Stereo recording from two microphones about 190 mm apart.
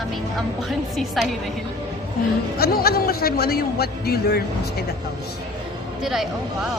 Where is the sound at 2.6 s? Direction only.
55° left (ahead or behind).